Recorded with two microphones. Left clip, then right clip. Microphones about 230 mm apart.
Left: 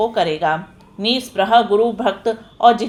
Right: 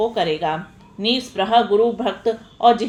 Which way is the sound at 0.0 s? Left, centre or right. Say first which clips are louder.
Left 3 dB; left.